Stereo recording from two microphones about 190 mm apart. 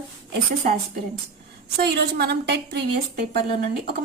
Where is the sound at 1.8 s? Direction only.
60° right (ahead or behind).